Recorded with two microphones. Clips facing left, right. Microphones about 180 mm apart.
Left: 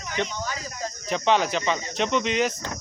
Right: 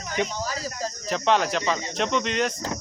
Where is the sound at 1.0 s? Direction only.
Centre (ahead or behind).